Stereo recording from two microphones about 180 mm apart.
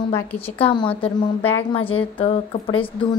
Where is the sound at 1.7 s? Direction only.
30° left (ahead or behind).